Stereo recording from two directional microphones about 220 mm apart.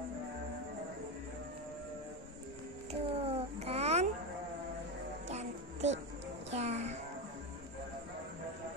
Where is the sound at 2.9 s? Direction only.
25° right (ahead or behind).